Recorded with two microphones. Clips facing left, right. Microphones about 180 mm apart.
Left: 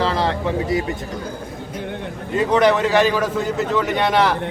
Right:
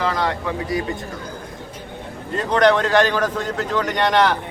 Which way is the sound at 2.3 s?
5° left (ahead or behind).